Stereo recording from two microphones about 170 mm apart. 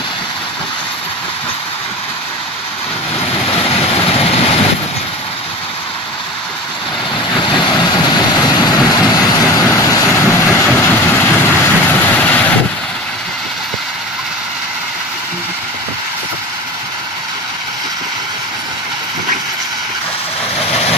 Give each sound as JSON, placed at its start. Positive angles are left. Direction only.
{"t": 3.4, "sound": "vehicle", "side_deg": 35}
{"t": 7.5, "sound": "vehicle", "side_deg": 25}